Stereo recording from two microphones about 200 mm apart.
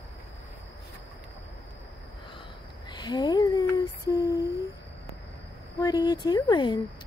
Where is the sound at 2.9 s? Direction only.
20° left (ahead or behind).